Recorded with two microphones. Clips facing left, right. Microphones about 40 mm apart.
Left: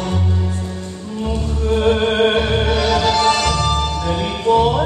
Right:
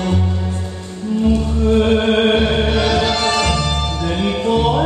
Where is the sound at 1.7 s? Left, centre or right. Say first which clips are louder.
Even; centre.